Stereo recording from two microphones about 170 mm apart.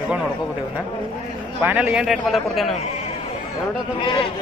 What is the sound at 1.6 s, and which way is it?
A man's voice, 10° right (ahead or behind).